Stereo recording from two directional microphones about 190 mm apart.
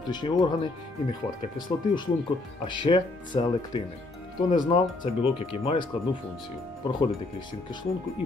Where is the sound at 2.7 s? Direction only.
25° left (ahead or behind).